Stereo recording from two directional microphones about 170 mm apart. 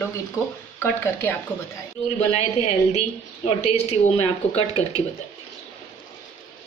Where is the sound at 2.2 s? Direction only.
40° left (ahead or behind).